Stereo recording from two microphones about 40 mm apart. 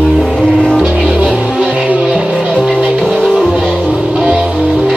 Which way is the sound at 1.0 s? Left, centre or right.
Right.